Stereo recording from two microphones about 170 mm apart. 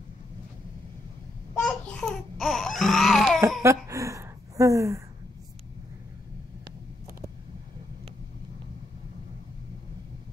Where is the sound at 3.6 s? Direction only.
15° right (ahead or behind).